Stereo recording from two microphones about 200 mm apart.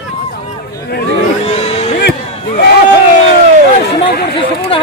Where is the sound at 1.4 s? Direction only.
35° left (ahead or behind).